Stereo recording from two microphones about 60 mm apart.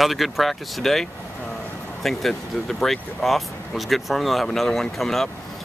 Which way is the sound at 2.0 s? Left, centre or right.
Centre.